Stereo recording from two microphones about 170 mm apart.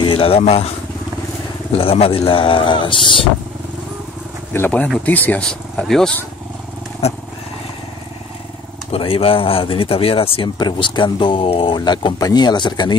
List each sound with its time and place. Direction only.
0.0 s speech: 30° left (ahead or behind)
1.8 s speech: 35° left (ahead or behind)
4.5 s speech: 10° left (ahead or behind)
7.0 s speech: 40° left (ahead or behind)
8.9 s speech: 35° left (ahead or behind)